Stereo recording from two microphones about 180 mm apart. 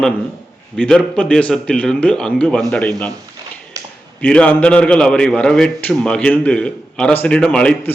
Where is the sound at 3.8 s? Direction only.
20° right (ahead or behind).